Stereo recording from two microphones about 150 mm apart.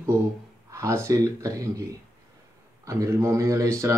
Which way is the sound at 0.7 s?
20° right (ahead or behind).